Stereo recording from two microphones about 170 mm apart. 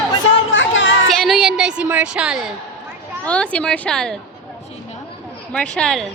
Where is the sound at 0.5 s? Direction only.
90° left.